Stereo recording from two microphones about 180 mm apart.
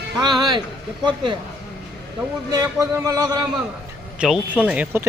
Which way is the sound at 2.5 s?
20° right (ahead or behind).